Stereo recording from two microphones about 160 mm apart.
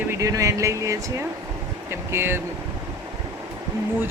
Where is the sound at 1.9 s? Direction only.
15° right (ahead or behind).